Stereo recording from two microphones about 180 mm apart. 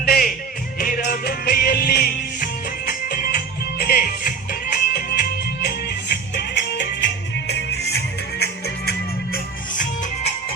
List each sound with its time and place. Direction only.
0.0 s music: 55° left (ahead or behind)